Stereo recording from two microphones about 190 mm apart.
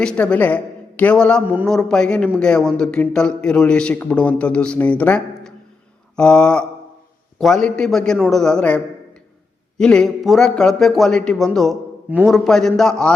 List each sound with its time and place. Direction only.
0.0 s speech: 5° left (ahead or behind)